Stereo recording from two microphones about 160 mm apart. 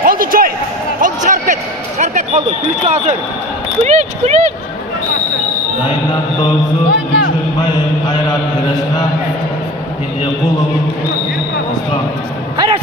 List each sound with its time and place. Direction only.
0.0 s a sound: 65° right (ahead or behind)
1.0 s a sound: 50° right (ahead or behind)
3.8 s speech: 45° right (ahead or behind)
6.9 s speech: 90° left
7.7 s mantra: 25° left (ahead or behind)
12.5 s speech: 30° right (ahead or behind)